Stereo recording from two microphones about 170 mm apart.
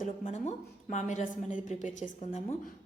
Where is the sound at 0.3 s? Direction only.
45° left (ahead or behind).